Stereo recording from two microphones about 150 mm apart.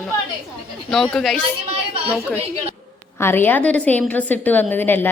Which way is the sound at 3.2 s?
15° left (ahead or behind).